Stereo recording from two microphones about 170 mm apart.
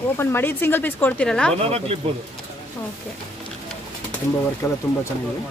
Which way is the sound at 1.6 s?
35° right (ahead or behind).